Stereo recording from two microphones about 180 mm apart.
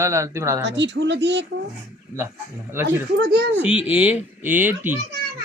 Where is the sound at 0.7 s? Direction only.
80° right.